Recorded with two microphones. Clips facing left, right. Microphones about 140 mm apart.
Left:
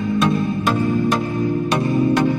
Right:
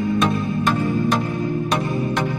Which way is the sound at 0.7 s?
20° left (ahead or behind).